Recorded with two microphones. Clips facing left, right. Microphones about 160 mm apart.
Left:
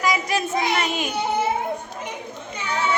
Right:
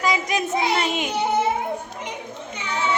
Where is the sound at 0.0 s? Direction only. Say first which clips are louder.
Even; 20° right (ahead or behind).